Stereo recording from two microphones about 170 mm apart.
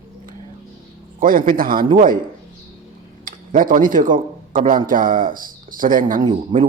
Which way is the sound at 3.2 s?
55° right (ahead or behind).